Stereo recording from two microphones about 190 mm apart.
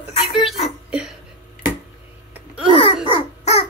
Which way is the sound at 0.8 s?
5° right (ahead or behind).